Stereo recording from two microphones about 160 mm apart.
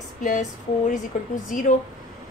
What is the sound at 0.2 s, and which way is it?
A woman's voice, 50° left (ahead or behind).